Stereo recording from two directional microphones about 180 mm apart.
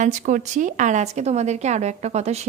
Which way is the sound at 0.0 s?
45° right (ahead or behind).